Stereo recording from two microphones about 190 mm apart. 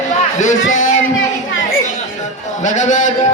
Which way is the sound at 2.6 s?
40° left (ahead or behind).